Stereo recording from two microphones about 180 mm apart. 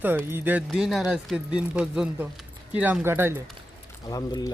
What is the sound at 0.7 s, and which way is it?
Speech, centre (ahead or behind).